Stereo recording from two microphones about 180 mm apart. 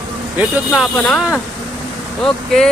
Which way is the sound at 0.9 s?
5° left (ahead or behind).